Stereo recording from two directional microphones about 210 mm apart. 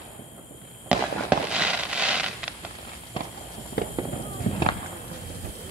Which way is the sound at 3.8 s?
50° left (ahead or behind).